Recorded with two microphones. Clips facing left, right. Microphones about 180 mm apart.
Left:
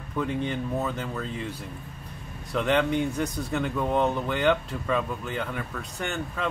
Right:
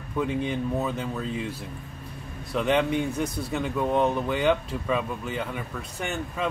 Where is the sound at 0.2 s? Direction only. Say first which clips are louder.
Right 2 dB; 5° right (ahead or behind).